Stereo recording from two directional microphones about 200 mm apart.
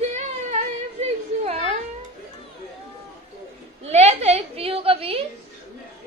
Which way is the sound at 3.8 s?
30° right (ahead or behind).